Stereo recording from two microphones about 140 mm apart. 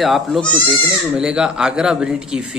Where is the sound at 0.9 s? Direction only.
5° right (ahead or behind).